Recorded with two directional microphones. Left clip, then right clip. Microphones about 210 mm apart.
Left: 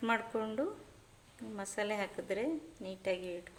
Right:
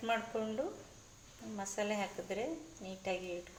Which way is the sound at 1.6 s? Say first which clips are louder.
Left 1 dB; 40° left (ahead or behind).